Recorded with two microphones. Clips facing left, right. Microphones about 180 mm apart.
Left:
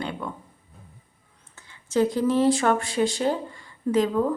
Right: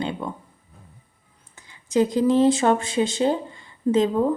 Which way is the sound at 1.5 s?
15° right (ahead or behind).